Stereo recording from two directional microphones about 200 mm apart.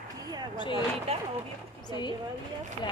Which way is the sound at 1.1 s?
30° right (ahead or behind).